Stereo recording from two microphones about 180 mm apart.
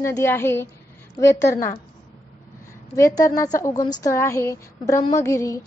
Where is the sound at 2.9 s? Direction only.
15° left (ahead or behind).